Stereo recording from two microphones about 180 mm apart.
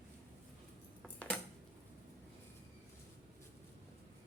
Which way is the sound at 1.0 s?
5° left (ahead or behind).